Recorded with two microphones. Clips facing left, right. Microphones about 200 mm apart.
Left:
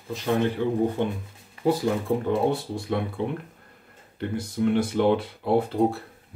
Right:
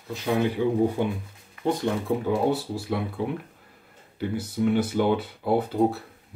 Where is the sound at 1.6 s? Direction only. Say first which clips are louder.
Left 2 dB; 5° left (ahead or behind).